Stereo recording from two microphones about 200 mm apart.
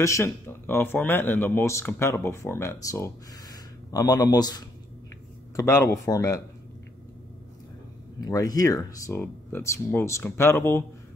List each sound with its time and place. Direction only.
0.0 s speech: 15° left (ahead or behind)
8.2 s speech: 20° left (ahead or behind)